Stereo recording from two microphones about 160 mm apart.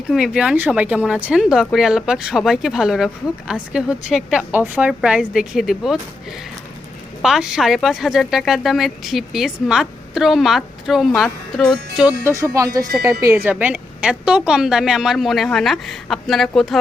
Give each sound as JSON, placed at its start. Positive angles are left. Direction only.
{"t": 0.1, "sound": "speech", "side_deg": -5}
{"t": 7.2, "sound": "speech", "side_deg": -5}
{"t": 12.2, "sound": "speech", "side_deg": -20}